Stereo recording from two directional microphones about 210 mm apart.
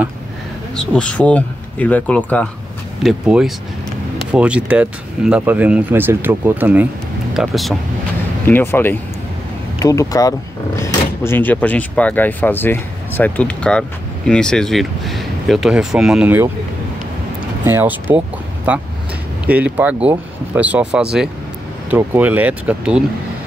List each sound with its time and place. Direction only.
0.7 s speech: 5° left (ahead or behind)
17.6 s speech: 10° right (ahead or behind)